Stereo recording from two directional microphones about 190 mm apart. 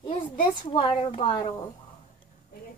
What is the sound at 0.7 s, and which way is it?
Speech, 30° left (ahead or behind).